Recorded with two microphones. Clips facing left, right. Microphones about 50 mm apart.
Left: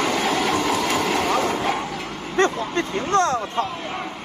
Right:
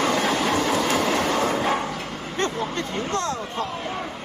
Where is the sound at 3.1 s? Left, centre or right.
Left.